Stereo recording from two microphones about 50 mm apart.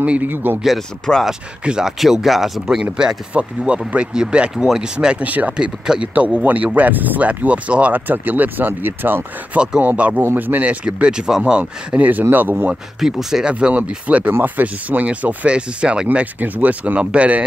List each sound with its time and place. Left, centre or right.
0.2 s speech: right
0.7 s speech: centre
1.6 s speech: centre
2.6 s speech: centre
3.3 s speech: right
5.5 s speech: centre
6.1 s speech: right
8.1 s speech: right
9.8 s speech: right
10.3 s speech: right
10.9 s speech: centre; by 12.7 s right
13.0 s speech: centre
13.5 s speech: right
16.3 s speech: right